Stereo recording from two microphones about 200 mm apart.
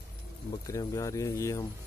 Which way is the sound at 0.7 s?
15° left (ahead or behind).